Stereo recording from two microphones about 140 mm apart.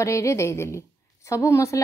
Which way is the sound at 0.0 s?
20° left (ahead or behind).